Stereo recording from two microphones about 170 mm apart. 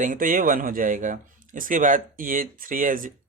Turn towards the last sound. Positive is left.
turn(degrees=-55)  # may be behind; listen again after turning